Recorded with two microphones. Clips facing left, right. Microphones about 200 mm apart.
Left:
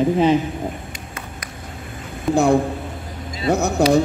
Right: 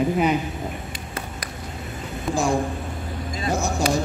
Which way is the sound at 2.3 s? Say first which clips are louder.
Left 7 dB; 60° left (ahead or behind).